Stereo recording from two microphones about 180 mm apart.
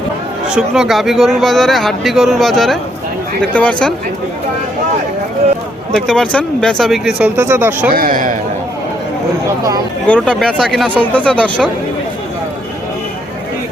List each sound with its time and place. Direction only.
0.4 s speech: 5° right (ahead or behind)
6.1 s speech: 5° left (ahead or behind); by 7.9 s 10° right (ahead or behind)
7.9 s a man's voice: 50° right (ahead or behind)
10.1 s speech: 5° left (ahead or behind)